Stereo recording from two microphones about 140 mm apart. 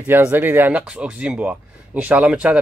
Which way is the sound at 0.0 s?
10° right (ahead or behind).